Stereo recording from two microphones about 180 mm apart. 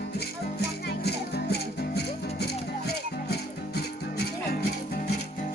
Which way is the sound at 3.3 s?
65° left (ahead or behind).